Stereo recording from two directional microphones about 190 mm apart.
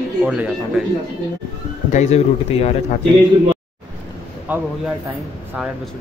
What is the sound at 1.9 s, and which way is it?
Speech, 35° left (ahead or behind).